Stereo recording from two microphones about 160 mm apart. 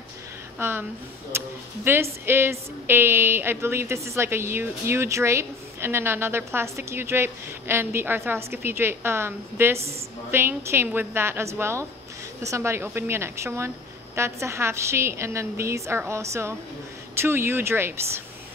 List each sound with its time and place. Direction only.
0.6 s a woman's voice: 15° right (ahead or behind)